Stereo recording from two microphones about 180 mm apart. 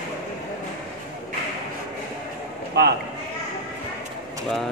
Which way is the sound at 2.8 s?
70° right (ahead or behind).